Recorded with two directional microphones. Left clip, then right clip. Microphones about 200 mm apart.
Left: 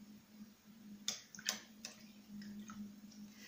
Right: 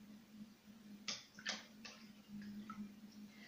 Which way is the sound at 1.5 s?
Centre (ahead or behind).